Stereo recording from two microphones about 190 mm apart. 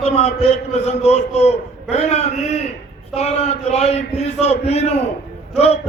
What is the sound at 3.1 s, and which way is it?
A man's voice, 35° left (ahead or behind).